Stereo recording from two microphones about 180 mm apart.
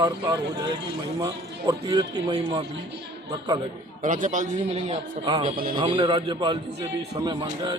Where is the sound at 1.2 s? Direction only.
20° right (ahead or behind).